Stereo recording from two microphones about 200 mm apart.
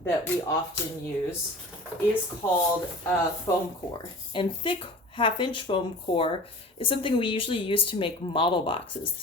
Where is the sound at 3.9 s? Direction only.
25° left (ahead or behind).